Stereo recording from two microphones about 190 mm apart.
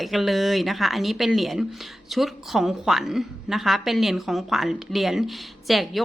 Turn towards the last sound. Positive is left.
turn(degrees=0)  # may be behind; listen again after turning